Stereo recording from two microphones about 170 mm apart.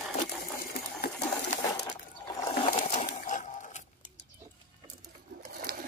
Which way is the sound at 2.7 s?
45° left (ahead or behind).